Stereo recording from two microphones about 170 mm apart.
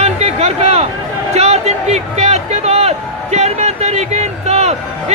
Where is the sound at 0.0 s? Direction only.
40° right (ahead or behind).